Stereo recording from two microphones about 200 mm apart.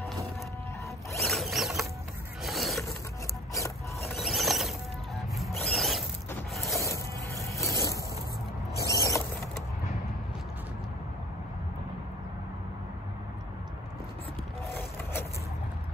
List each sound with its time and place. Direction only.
1.2 s mechanisms: centre (ahead or behind)
2.4 s a sound: centre (ahead or behind)
3.5 s rub: 15° left (ahead or behind)
4.1 s music: centre (ahead or behind)
6.5 s zipper: centre (ahead or behind)
6.8 s music: 15° left (ahead or behind)
8.8 s creak: 15° left (ahead or behind)
14.7 s a sound: 10° left (ahead or behind)